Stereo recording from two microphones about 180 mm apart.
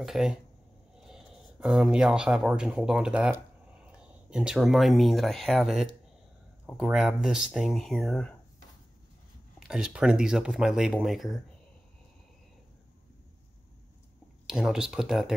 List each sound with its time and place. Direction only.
0.0 s speech: centre (ahead or behind)
9.6 s speech: 5° right (ahead or behind)
14.4 s speech: 5° right (ahead or behind)